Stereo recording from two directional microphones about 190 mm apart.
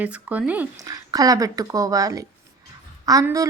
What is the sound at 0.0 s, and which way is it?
Speech, 10° right (ahead or behind).